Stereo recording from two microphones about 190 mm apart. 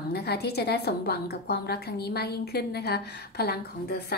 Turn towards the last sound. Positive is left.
turn(degrees=55)  # may be behind; listen again after turning